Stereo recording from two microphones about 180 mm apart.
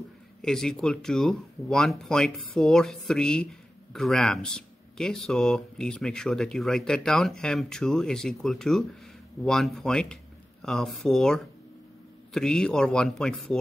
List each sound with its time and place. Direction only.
0.4 s speech: 5° left (ahead or behind)